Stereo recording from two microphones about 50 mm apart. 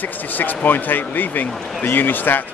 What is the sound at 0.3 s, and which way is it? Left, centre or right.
Speech, left.